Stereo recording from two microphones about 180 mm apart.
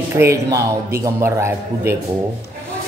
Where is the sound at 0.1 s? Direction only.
15° right (ahead or behind).